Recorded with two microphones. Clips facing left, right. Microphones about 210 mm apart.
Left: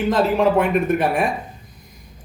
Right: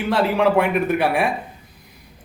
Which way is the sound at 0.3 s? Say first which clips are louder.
Left 1 dB; 70° right (ahead or behind).